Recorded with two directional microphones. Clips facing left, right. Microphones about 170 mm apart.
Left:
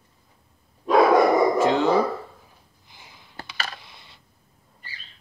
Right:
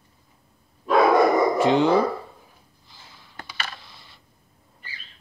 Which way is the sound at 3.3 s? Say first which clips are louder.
Left 1 dB; 35° left (ahead or behind).